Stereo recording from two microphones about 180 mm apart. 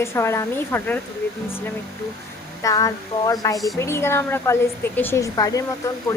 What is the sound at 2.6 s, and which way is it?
A woman's voice, 20° left (ahead or behind).